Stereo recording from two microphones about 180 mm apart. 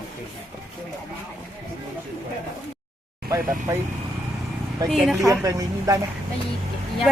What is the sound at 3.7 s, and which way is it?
Speech, 15° right (ahead or behind).